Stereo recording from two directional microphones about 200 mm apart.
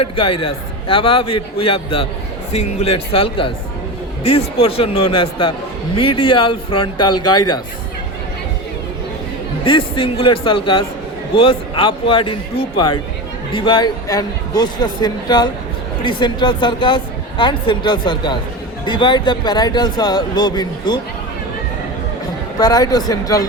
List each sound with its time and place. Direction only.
0.0 s a woman's voice: 25° left (ahead or behind)
9.6 s a woman's voice: 25° left (ahead or behind)
22.5 s a woman's voice: 20° left (ahead or behind)